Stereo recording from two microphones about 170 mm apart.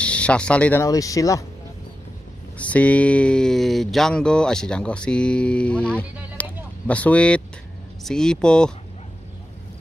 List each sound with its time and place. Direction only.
0.0 s speech: 5° left (ahead or behind)
0.8 s speech: 20° left (ahead or behind)
2.5 s speech: 10° left (ahead or behind)
6.4 s a sound: 10° left (ahead or behind)
6.9 s speech: 10° left (ahead or behind)